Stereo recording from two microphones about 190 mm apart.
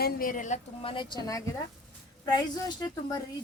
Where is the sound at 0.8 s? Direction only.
25° left (ahead or behind).